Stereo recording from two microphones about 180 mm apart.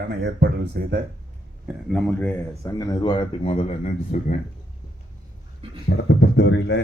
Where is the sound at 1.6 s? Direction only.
Centre (ahead or behind); by 4.4 s 45° left (ahead or behind).